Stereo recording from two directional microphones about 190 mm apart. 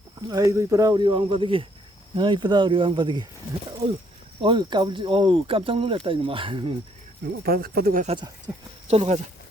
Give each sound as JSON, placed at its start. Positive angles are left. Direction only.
{"t": 0.2, "sound": "speech", "side_deg": -20}
{"t": 7.4, "sound": "speech", "side_deg": -50}
{"t": 8.0, "sound": "speech", "side_deg": -25}
{"t": 8.5, "sound": "speech", "side_deg": -15}
{"t": 8.9, "sound": "speech", "side_deg": -35}